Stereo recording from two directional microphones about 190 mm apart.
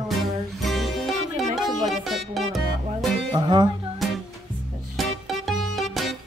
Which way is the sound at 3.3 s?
25° right (ahead or behind).